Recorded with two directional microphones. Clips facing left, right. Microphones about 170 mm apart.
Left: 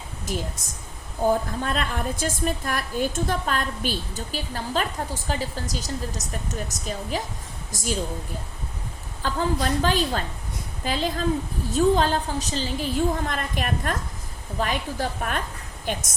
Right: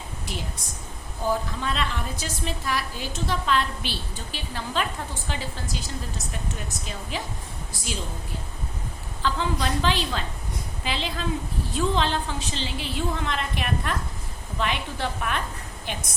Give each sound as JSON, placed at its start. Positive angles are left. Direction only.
{"t": 0.3, "sound": "a woman's voice", "side_deg": 45}
{"t": 9.2, "sound": "a woman's voice", "side_deg": 45}